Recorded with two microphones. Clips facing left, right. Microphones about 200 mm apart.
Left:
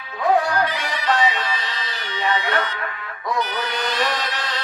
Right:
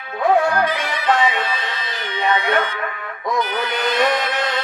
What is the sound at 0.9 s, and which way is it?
Music, 55° right (ahead or behind).